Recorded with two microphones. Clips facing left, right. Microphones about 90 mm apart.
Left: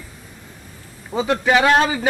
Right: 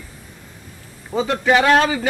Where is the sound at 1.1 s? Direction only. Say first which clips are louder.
Right 1 dB; 5° left (ahead or behind).